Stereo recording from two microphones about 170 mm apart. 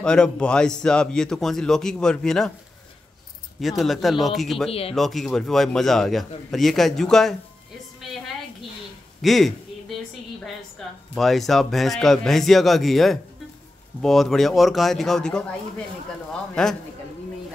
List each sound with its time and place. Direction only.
0.0 s a man's voice: 5° left (ahead or behind)
3.6 s a man's voice: centre (ahead or behind)
4.6 s speech: 35° left (ahead or behind)
4.9 s a man's voice: centre (ahead or behind)
9.2 s a sound: centre (ahead or behind)
11.1 s a man's voice: centre (ahead or behind)
16.6 s a man's voice: 5° left (ahead or behind)